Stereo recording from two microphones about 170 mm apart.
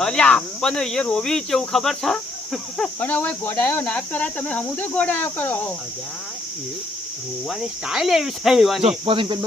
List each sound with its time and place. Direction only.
0.0 s speech: 5° left (ahead or behind)
7.4 s cricket: centre (ahead or behind)
8.8 s speech: 35° right (ahead or behind)